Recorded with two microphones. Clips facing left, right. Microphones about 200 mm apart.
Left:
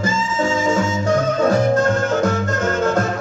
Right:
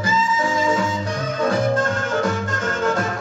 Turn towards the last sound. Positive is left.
turn(degrees=40)  # may be behind; listen again after turning